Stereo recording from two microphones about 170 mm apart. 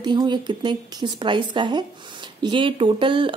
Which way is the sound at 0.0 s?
25° right (ahead or behind).